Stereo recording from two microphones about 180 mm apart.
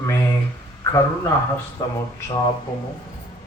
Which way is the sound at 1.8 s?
20° left (ahead or behind).